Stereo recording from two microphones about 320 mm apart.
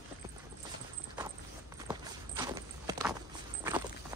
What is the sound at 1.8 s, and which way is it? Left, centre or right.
Walk, centre.